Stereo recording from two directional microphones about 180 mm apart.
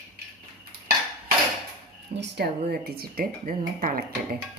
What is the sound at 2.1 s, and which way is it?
A woman's voice, 70° right (ahead or behind).